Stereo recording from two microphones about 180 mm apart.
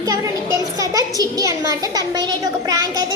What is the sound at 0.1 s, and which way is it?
A child's voice, 20° right (ahead or behind).